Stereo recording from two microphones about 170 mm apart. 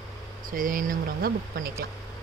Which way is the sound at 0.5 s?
55° right (ahead or behind).